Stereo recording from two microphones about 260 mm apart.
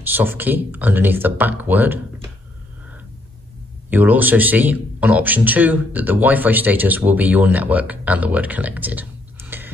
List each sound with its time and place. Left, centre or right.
0.0 s speech: centre
3.9 s speech: centre